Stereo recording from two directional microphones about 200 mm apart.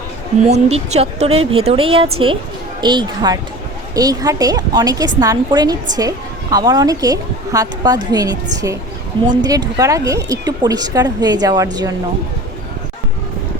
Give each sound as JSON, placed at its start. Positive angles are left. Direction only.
{"t": 0.5, "sound": "a woman's voice", "side_deg": -35}